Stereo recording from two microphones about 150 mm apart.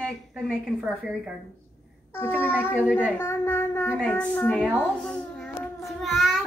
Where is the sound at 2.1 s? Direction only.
15° left (ahead or behind).